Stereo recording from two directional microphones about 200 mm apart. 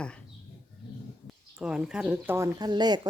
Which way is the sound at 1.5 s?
5° right (ahead or behind).